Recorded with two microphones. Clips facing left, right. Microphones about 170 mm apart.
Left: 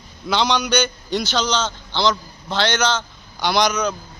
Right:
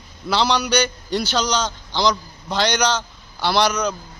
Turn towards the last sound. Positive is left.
turn(degrees=-5)  # may be behind; listen again after turning